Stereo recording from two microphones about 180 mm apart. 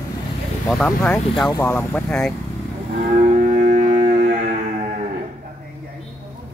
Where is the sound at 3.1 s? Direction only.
40° right (ahead or behind).